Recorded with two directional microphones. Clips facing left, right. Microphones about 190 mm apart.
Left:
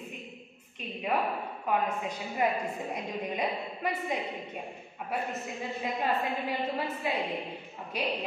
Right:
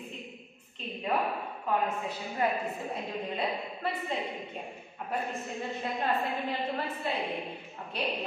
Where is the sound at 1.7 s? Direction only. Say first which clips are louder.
Left 1 dB; 15° left (ahead or behind).